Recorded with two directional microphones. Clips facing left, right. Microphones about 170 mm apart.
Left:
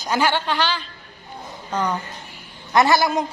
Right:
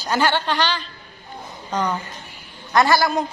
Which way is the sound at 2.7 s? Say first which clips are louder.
Even; 20° left (ahead or behind).